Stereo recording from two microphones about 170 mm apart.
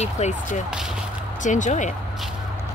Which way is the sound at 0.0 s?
40° left (ahead or behind).